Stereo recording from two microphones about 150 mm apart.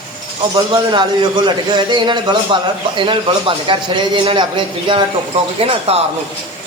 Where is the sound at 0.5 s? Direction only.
30° right (ahead or behind).